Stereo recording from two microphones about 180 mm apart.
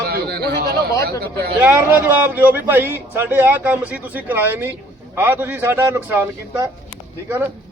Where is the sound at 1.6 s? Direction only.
10° right (ahead or behind).